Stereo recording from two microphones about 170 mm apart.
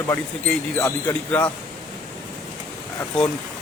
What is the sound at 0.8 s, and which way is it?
Speech, 15° left (ahead or behind).